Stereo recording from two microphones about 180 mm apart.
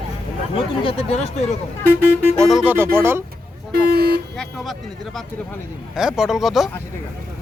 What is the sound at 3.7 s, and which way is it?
Vehicle, 60° right (ahead or behind).